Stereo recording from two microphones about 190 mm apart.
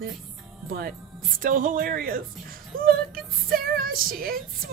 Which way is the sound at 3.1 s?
50° right (ahead or behind).